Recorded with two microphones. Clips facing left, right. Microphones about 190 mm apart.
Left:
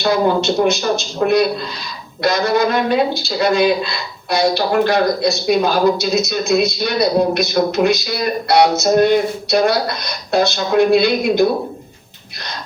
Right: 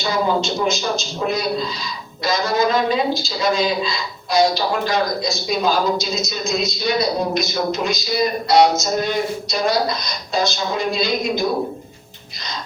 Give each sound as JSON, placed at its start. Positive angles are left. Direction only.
{"t": 0.0, "sound": "a man's voice", "side_deg": 60}